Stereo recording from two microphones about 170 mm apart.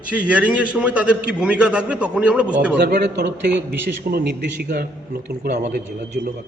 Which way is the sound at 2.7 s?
75° right (ahead or behind).